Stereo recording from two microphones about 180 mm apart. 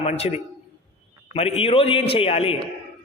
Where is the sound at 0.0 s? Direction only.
35° left (ahead or behind).